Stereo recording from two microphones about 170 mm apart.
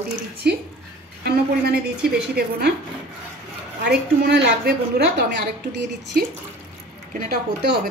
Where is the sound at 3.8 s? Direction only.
75° right (ahead or behind).